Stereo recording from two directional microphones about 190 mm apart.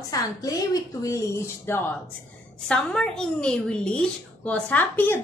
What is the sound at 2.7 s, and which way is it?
A woman's voice, 5° left (ahead or behind).